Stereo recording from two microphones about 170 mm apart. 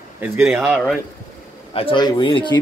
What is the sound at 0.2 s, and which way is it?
Speech, 10° right (ahead or behind).